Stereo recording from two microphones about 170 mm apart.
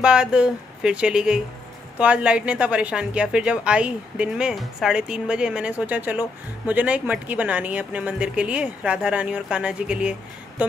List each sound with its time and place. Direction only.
0.0 s a woman's voice: 5° right (ahead or behind)